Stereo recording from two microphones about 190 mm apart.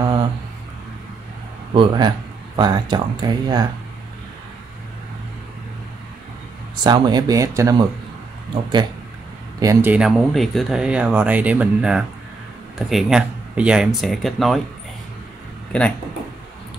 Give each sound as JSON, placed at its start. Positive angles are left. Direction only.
{"t": 0.0, "sound": "a sound", "side_deg": -25}
{"t": 1.7, "sound": "speech", "side_deg": -25}
{"t": 6.8, "sound": "speech", "side_deg": -20}
{"t": 9.6, "sound": "speech", "side_deg": -15}